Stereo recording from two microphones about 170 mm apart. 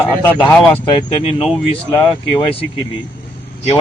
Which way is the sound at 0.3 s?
10° left (ahead or behind).